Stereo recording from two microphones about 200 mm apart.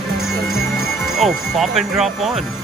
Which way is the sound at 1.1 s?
Centre (ahead or behind).